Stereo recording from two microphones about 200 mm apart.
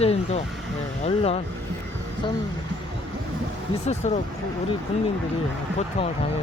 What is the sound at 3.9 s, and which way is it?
Speech, 35° left (ahead or behind).